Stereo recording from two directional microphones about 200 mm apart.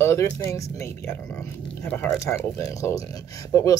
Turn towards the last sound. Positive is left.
turn(degrees=15)  # may be behind; listen again after turning